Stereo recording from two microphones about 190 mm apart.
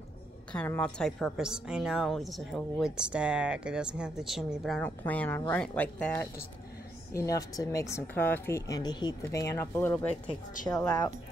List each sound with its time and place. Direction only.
0.5 s a woman's voice: 5° left (ahead or behind)
7.2 s speech: 20° left (ahead or behind)